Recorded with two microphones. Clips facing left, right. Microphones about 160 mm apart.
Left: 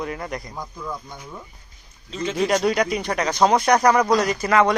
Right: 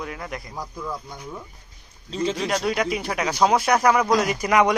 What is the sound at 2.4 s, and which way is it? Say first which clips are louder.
Speech: left 9 dB; centre (ahead or behind).